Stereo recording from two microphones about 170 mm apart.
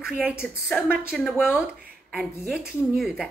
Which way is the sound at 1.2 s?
10° left (ahead or behind).